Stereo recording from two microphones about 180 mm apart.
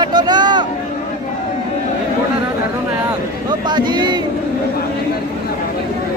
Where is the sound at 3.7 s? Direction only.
25° right (ahead or behind).